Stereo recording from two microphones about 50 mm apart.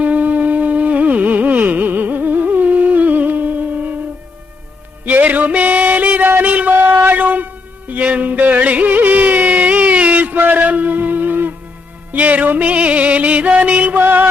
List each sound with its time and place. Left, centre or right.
0.0 s music: right
5.0 s music: right
6.7 s a sound: right
7.1 s music: right